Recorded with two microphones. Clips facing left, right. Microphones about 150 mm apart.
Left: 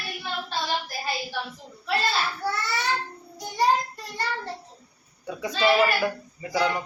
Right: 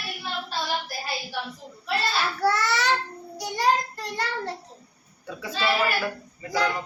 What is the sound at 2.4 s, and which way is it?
Child singing, 90° right.